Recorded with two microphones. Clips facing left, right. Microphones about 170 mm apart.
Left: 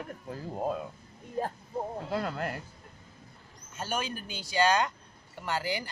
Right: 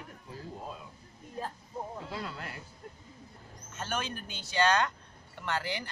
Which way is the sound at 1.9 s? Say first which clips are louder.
Left 7 dB; 50° left (ahead or behind).